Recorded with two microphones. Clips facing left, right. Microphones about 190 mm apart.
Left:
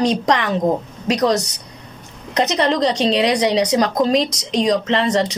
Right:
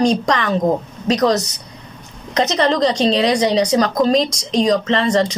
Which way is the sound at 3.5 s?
15° left (ahead or behind).